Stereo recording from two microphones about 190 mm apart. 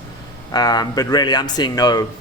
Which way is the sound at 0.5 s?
20° left (ahead or behind).